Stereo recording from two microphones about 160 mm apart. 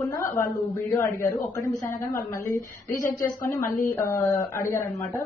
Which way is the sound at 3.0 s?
60° left (ahead or behind).